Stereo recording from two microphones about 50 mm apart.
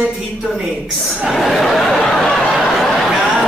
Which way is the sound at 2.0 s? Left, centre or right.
Centre.